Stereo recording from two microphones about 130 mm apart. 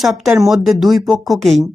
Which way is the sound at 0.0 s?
Centre (ahead or behind).